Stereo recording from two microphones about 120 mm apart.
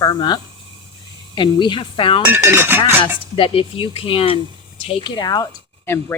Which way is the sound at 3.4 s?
50° left (ahead or behind).